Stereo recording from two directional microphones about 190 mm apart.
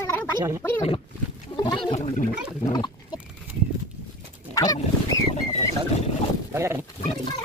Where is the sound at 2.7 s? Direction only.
25° left (ahead or behind).